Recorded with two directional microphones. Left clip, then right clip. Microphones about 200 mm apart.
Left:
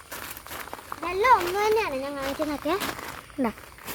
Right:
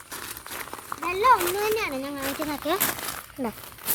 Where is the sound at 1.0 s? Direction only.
20° left (ahead or behind).